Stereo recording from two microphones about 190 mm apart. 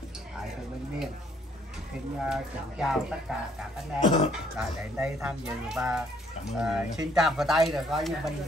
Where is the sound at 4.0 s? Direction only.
25° left (ahead or behind).